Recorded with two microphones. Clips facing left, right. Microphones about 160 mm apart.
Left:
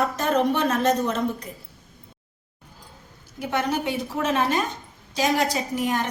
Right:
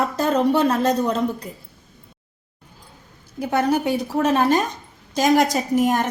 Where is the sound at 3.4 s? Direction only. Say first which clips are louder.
Right 5 dB; 35° right (ahead or behind).